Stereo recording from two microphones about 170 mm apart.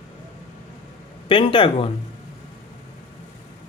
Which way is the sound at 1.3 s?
30° left (ahead or behind).